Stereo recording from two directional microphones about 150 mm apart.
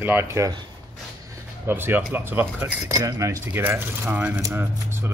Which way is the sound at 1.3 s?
15° right (ahead or behind).